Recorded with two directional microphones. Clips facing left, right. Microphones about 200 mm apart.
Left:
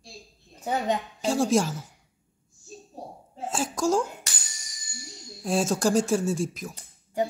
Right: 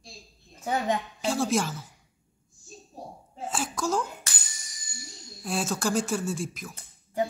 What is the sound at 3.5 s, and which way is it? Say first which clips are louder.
Speech: left 4 dB; 45° left (ahead or behind).